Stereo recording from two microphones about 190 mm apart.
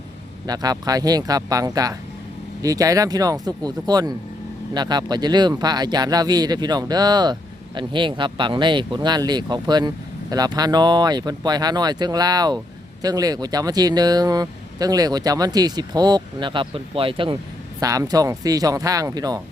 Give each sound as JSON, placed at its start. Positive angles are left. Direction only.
{"t": 0.4, "sound": "speech", "side_deg": -20}